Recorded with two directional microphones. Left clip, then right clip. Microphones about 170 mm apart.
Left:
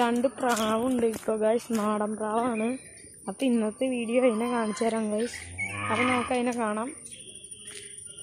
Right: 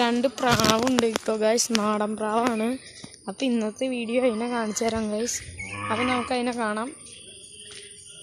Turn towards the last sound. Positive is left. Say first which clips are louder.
# right 2 dB
turn(degrees=-5)  # may be behind; listen again after turning